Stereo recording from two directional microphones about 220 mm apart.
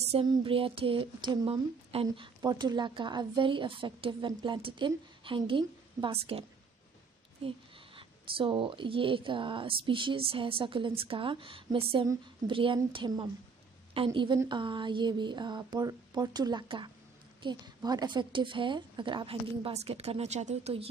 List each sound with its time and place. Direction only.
0.1 s speech: 25° right (ahead or behind)
7.4 s speech: 25° right (ahead or behind)